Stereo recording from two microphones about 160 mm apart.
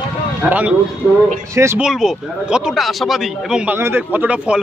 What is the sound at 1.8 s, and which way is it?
Speech, 5° right (ahead or behind).